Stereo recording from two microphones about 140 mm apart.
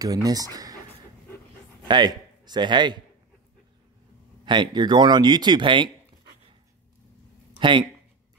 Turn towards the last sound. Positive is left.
turn(degrees=-35)  # may be behind; listen again after turning